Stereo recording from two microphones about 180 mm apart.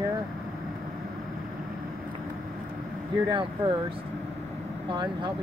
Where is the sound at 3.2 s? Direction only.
20° right (ahead or behind).